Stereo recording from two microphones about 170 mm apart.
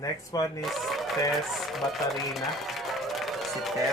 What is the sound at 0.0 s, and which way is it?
Speech, 20° left (ahead or behind).